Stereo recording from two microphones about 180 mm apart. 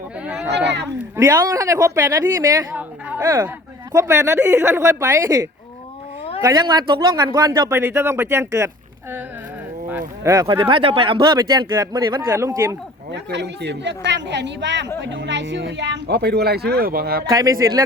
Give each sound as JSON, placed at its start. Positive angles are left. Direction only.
{"t": 0.5, "sound": "speech", "side_deg": -70}
{"t": 1.1, "sound": "a woman's voice", "side_deg": -15}
{"t": 10.2, "sound": "speech", "side_deg": -20}
{"t": 13.3, "sound": "speech", "side_deg": -70}
{"t": 17.2, "sound": "speech", "side_deg": -20}